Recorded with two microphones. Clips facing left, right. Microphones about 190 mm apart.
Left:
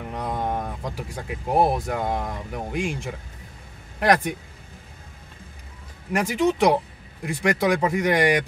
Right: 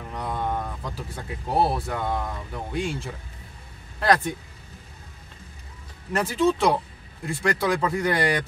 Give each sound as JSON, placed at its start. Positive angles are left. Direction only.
{"t": 0.1, "sound": "a sound", "side_deg": 20}
{"t": 1.2, "sound": "speech", "side_deg": 15}
{"t": 6.1, "sound": "speech", "side_deg": 15}